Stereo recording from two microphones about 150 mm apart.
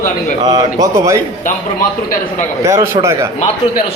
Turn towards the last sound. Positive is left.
turn(degrees=-20)  # may be behind; listen again after turning